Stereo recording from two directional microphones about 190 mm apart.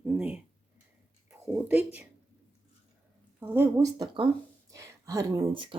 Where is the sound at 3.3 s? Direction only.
10° right (ahead or behind).